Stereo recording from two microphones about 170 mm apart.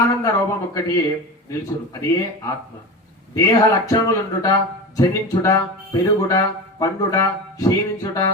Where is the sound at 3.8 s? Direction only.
20° left (ahead or behind).